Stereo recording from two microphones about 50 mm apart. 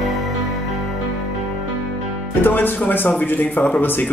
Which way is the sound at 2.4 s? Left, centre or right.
Left.